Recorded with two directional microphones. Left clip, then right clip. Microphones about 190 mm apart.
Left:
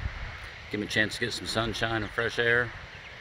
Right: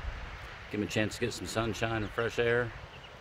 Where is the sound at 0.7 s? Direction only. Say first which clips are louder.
Left 5 dB; centre (ahead or behind).